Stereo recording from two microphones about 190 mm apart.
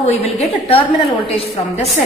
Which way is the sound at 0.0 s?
35° left (ahead or behind).